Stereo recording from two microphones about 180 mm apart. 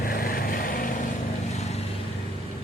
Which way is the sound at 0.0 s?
55° left (ahead or behind).